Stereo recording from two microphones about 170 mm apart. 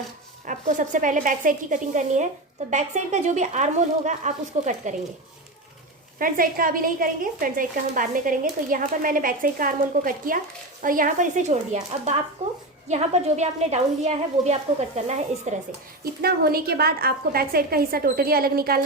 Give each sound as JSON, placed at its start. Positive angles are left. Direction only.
{"t": 0.4, "sound": "a woman's voice", "side_deg": -50}
{"t": 6.1, "sound": "a woman's voice", "side_deg": -55}
{"t": 16.2, "sound": "a woman's voice", "side_deg": -65}